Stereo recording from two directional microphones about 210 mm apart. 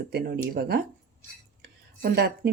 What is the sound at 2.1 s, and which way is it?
Speech, 50° right (ahead or behind).